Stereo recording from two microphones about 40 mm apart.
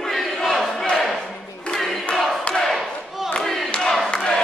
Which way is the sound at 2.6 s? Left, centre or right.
Centre.